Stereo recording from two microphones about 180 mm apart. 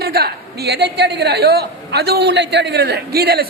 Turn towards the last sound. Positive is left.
turn(degrees=-60)  # may be behind; listen again after turning